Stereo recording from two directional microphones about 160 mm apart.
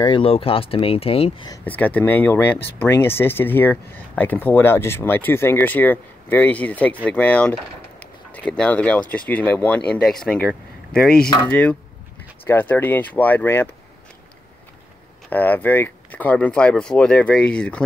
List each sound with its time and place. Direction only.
0.0 s speech: 30° left (ahead or behind)
1.6 s speech: 10° left (ahead or behind)
8.0 s a sound: 10° left (ahead or behind)
9.1 s speech: 10° left (ahead or behind)
15.2 s speech: 10° left (ahead or behind)